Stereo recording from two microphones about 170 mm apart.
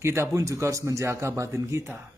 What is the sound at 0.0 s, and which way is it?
Speech, 15° right (ahead or behind).